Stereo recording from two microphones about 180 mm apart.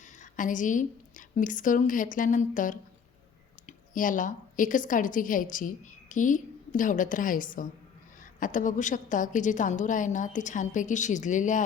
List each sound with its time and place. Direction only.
0.2 s a woman's voice: 45° left (ahead or behind)